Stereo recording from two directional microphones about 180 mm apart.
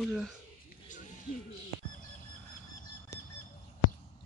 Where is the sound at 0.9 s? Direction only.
45° left (ahead or behind).